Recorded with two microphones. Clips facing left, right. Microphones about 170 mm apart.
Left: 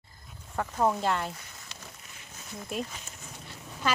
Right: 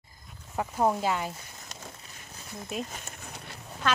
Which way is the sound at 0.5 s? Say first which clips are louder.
Right 1 dB; 10° right (ahead or behind).